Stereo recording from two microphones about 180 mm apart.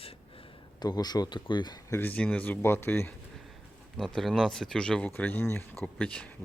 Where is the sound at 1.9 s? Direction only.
10° left (ahead or behind).